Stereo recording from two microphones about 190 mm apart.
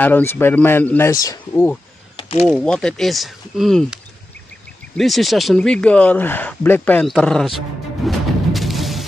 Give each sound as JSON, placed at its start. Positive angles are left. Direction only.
{"t": 0.0, "sound": "speech", "side_deg": 10}
{"t": 2.1, "sound": "a sound", "side_deg": 30}
{"t": 2.4, "sound": "speech", "side_deg": 5}
{"t": 8.0, "sound": "music", "side_deg": 0}